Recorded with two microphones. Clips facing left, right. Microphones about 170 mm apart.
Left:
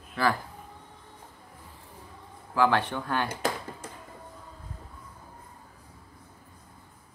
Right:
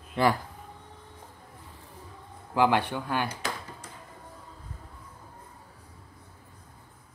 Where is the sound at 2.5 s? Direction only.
15° right (ahead or behind).